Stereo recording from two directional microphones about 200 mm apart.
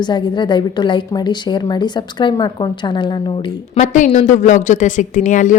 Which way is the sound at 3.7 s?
40° left (ahead or behind).